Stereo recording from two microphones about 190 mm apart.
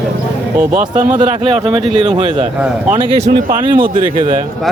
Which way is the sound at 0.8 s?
40° right (ahead or behind).